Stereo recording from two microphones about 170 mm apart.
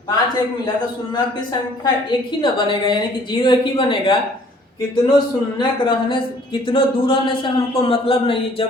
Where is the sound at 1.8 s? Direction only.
30° left (ahead or behind).